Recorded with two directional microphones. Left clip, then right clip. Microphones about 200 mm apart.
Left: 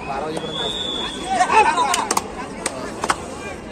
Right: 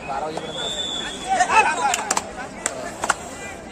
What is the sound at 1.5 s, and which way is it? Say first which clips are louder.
Speech: left 3 dB; centre (ahead or behind).